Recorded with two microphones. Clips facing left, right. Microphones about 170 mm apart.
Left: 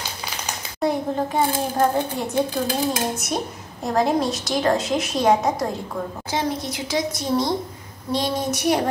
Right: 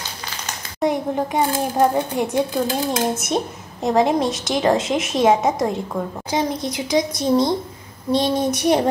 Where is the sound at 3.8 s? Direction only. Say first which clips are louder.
Right 3 dB; 20° right (ahead or behind).